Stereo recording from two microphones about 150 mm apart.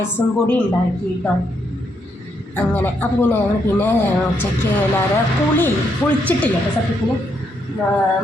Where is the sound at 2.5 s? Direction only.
10° left (ahead or behind).